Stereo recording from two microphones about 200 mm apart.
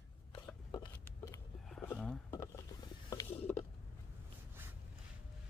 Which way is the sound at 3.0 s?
20° left (ahead or behind).